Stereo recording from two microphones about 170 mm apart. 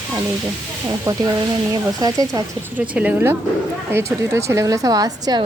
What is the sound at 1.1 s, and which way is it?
A woman's voice, 20° right (ahead or behind).